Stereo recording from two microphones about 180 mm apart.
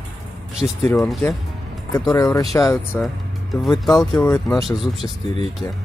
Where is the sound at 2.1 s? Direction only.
20° left (ahead or behind).